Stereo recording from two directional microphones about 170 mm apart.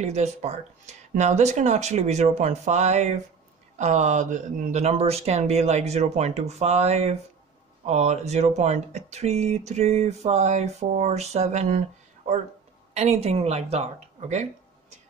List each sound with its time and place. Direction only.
0.0 s speech: 40° right (ahead or behind)
12.9 s speech: 40° right (ahead or behind)